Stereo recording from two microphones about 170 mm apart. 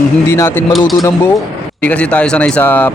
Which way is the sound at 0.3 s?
15° left (ahead or behind).